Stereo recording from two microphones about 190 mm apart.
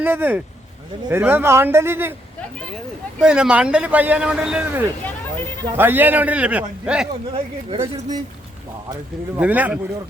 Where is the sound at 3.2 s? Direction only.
5° right (ahead or behind).